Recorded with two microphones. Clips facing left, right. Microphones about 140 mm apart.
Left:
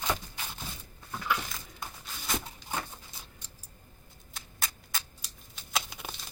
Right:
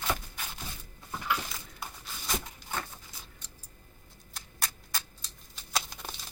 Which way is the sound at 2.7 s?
15° left (ahead or behind).